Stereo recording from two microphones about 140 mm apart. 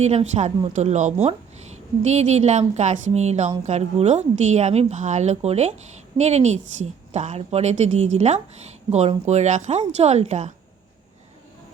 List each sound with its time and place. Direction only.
0.0 s a woman's voice: 50° right (ahead or behind)